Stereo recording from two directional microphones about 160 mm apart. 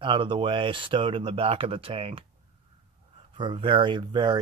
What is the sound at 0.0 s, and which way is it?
Speech, 30° right (ahead or behind).